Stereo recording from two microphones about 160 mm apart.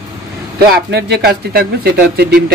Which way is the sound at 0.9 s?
90° right.